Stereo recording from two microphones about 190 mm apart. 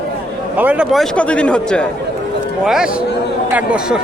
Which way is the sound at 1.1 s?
5° left (ahead or behind).